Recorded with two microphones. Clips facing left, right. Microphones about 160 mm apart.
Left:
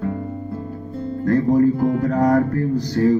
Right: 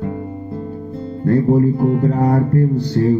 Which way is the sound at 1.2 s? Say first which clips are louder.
Right 2 dB; 30° right (ahead or behind).